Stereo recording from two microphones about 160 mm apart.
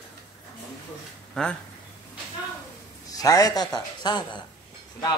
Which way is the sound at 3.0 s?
20° left (ahead or behind).